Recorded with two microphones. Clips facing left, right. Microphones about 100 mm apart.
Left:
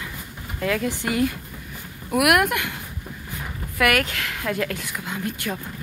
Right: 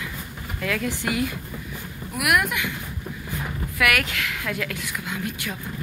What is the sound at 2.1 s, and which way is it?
Speech, 60° left (ahead or behind).